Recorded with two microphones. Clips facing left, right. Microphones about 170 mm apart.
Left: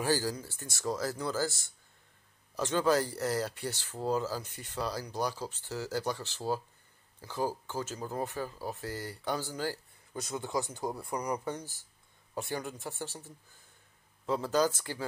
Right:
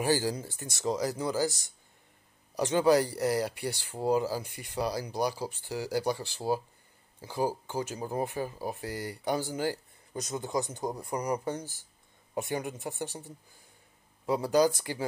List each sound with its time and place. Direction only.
0.0 s speech: 20° right (ahead or behind)
12.4 s speech: 20° right (ahead or behind)